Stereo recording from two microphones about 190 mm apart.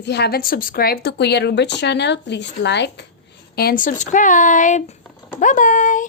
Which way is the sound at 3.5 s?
50° left (ahead or behind).